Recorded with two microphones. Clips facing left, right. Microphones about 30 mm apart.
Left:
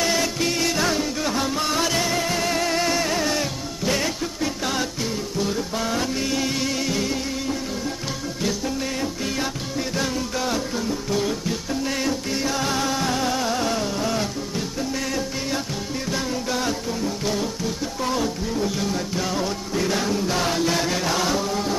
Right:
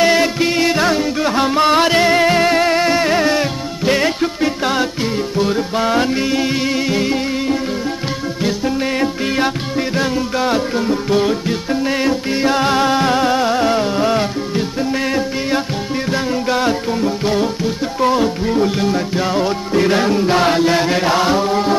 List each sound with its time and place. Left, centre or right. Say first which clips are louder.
0.0 s music: right 9 dB; right
9.0 s music: right 9 dB; right